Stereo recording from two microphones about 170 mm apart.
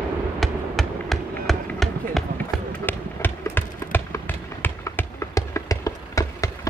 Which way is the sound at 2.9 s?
10° left (ahead or behind).